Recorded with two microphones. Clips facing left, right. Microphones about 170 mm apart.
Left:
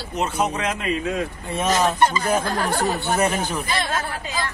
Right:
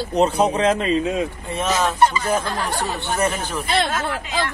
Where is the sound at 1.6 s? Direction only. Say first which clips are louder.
Even; 10° left (ahead or behind).